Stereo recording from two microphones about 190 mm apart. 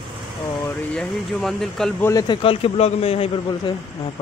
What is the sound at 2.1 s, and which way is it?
A man's voice, 20° left (ahead or behind).